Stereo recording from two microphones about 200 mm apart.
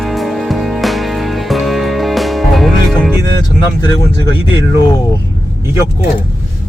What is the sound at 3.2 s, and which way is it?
Speech, 20° left (ahead or behind).